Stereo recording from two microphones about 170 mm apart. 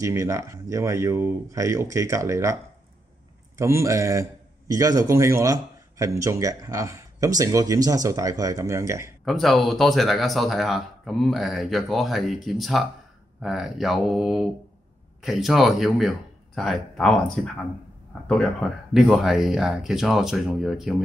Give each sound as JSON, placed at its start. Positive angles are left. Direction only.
{"t": 0.0, "sound": "speech", "side_deg": -15}
{"t": 3.5, "sound": "a man's voice", "side_deg": -15}
{"t": 9.2, "sound": "speech", "side_deg": 0}
{"t": 18.2, "sound": "speech", "side_deg": 5}